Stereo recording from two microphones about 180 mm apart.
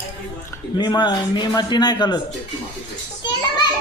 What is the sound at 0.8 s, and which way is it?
A man's voice, 25° left (ahead or behind).